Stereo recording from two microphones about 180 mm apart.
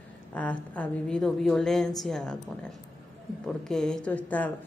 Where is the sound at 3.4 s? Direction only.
5° left (ahead or behind).